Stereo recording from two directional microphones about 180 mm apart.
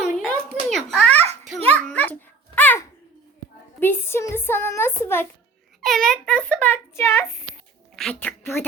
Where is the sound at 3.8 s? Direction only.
15° left (ahead or behind).